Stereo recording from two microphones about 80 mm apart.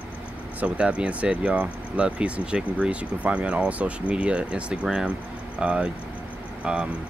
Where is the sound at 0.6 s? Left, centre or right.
Centre.